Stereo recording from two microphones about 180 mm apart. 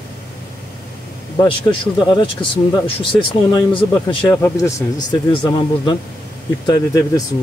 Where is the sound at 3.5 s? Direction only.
30° left (ahead or behind).